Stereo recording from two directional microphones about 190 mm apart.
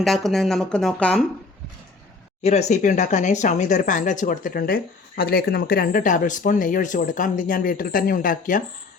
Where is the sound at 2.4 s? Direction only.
35° left (ahead or behind).